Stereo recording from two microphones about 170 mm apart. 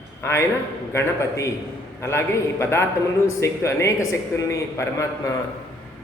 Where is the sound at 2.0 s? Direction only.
15° left (ahead or behind).